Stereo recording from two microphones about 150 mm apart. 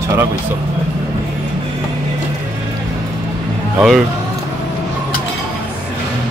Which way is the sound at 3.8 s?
Centre (ahead or behind).